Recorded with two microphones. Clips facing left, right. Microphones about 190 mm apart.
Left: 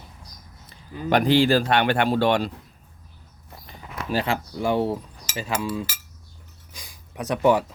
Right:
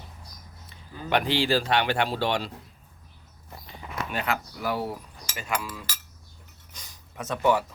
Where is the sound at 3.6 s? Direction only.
30° left (ahead or behind).